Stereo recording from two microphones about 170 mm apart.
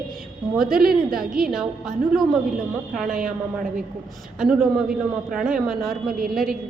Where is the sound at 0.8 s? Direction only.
60° right (ahead or behind).